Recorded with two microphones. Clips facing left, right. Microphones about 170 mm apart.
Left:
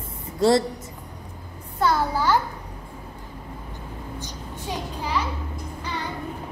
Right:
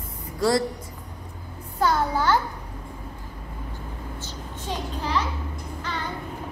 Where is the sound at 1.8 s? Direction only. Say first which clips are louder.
Even; 5° left (ahead or behind).